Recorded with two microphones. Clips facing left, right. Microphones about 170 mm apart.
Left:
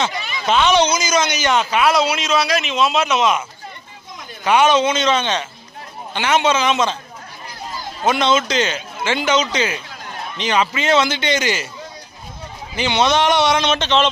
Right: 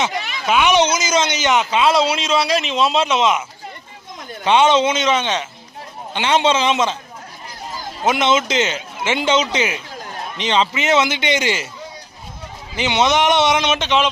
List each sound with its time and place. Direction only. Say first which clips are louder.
0.4 s speech: even; 10° right (ahead or behind)
4.4 s speech: even; 25° right (ahead or behind)
8.0 s speech: even; 20° right (ahead or behind)
12.7 s speech: even; 20° right (ahead or behind)